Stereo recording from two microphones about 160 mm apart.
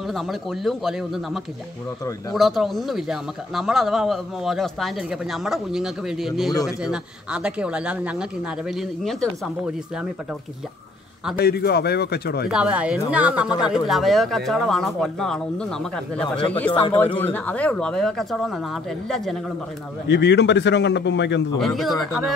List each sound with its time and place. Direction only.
0.1 s speech: centre (ahead or behind)
11.3 s speech: 85° left
12.4 s speech: 5° right (ahead or behind)
20.1 s a man's voice: 90° left
21.5 s speech: centre (ahead or behind)